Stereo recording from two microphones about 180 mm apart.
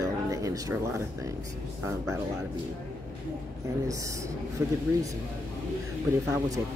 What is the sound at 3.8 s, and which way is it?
Speech, 15° right (ahead or behind).